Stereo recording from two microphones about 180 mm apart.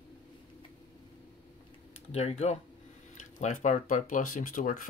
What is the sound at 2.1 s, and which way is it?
Speech, 35° left (ahead or behind).